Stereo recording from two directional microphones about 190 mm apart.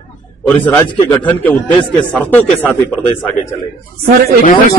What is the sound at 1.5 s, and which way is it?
A man's voice, 5° left (ahead or behind).